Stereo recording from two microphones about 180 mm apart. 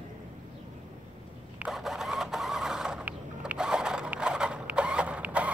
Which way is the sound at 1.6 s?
Centre (ahead or behind).